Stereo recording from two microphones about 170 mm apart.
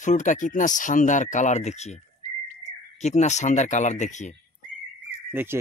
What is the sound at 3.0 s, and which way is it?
Speech, 45° left (ahead or behind).